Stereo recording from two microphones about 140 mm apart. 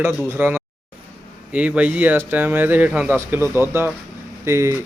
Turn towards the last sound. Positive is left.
turn(degrees=-20)  # may be behind; listen again after turning